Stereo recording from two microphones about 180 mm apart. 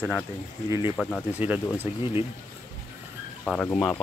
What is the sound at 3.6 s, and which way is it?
Speech, 20° left (ahead or behind).